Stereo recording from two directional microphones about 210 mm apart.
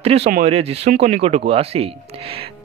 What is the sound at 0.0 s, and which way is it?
Speech, 30° right (ahead or behind).